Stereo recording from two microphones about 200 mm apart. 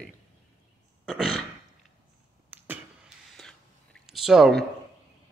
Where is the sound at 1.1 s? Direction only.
Centre (ahead or behind).